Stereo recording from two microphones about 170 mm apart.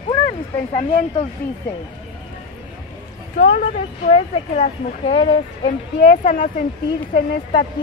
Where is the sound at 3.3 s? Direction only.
45° left (ahead or behind).